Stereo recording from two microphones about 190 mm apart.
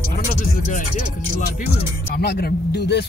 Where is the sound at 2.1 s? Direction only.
55° left (ahead or behind).